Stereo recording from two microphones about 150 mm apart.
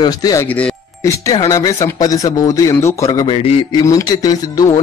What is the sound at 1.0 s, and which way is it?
A man's voice, 20° left (ahead or behind).